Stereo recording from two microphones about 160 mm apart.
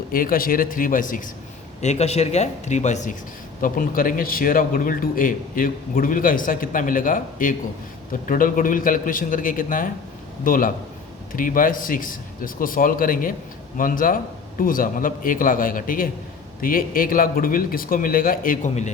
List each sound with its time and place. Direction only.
0.1 s a man's voice: 65° left (ahead or behind)
1.8 s speech: 45° left (ahead or behind)
3.6 s a man's voice: 60° left (ahead or behind)